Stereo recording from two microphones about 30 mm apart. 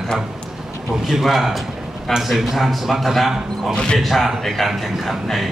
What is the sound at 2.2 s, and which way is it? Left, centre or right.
A man's voice, centre.